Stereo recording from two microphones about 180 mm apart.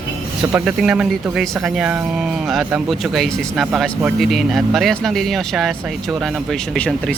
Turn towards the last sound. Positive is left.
turn(degrees=5)  # may be behind; listen again after turning